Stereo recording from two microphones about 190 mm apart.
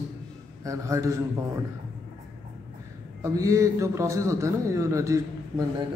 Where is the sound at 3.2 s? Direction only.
15° right (ahead or behind).